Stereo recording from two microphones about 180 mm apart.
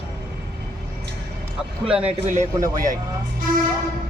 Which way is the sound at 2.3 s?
20° right (ahead or behind).